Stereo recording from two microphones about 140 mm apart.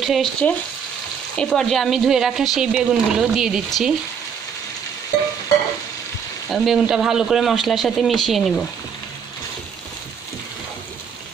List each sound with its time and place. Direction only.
0.0 s speech: centre (ahead or behind)
6.5 s speech: centre (ahead or behind)